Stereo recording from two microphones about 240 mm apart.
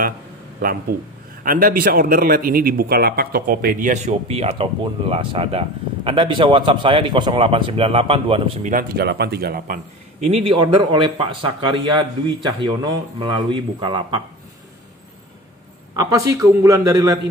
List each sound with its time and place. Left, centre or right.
0.6 s a man's voice: right
8.7 s speech: right
10.2 s a man's voice: right
16.0 s a man's voice: centre